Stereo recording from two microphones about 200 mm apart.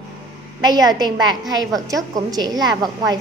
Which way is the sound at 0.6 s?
20° right (ahead or behind).